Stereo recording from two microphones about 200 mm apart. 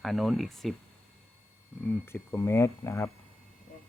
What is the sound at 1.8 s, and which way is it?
Speech, 10° left (ahead or behind).